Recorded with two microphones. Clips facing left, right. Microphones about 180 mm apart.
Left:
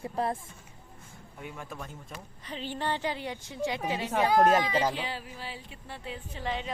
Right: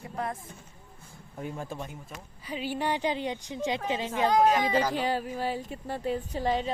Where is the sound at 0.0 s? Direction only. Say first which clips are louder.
Left 3 dB; 30° left (ahead or behind).